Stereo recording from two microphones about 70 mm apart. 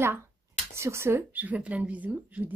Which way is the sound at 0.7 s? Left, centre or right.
Right.